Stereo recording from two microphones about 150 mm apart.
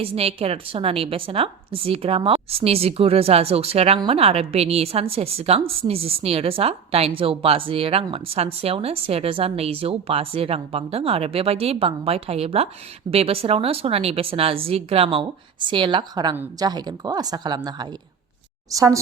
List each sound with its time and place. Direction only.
0.0 s a woman's voice: 40° right (ahead or behind); by 18.9 s 20° right (ahead or behind)